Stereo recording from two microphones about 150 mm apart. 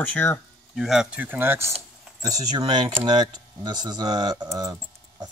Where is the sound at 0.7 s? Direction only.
5° right (ahead or behind).